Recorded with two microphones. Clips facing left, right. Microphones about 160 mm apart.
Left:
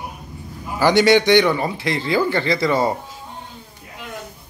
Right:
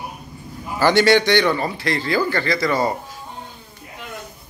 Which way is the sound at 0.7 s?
15° left (ahead or behind).